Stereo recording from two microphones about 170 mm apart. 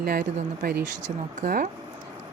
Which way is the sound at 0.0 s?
60° right (ahead or behind).